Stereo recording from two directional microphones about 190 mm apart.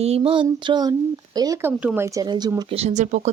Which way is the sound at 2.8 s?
35° right (ahead or behind).